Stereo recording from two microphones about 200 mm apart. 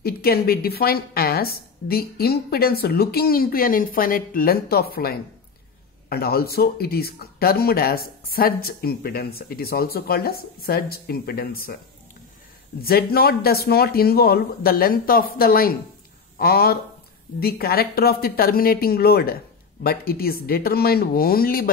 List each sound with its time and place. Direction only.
0.0 s speech: 50° left (ahead or behind)
12.8 s speech: 50° left (ahead or behind)